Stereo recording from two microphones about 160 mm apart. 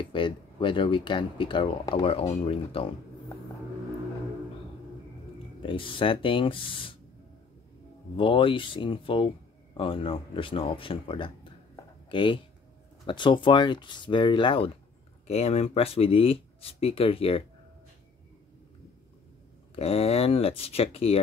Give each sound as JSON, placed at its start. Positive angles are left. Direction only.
{"t": 0.0, "sound": "speech", "side_deg": 30}
{"t": 5.6, "sound": "speech", "side_deg": 35}
{"t": 8.2, "sound": "speech", "side_deg": 35}
{"t": 19.7, "sound": "speech", "side_deg": 40}